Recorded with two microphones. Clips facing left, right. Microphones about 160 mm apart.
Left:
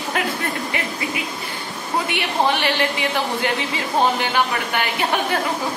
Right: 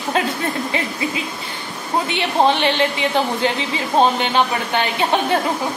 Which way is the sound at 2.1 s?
25° right (ahead or behind).